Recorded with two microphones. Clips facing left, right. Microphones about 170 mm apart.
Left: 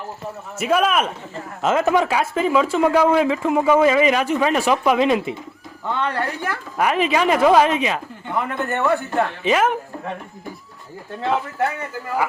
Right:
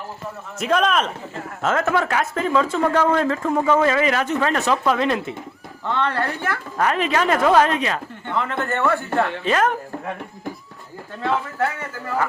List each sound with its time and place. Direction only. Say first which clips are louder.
0.6 s a woman's voice: left 1 dB; 5° left (ahead or behind)
11.2 s a man's voice: left 1 dB; 20° left (ahead or behind)